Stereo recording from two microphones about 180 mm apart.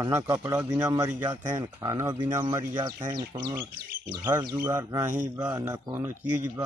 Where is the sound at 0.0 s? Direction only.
20° right (ahead or behind).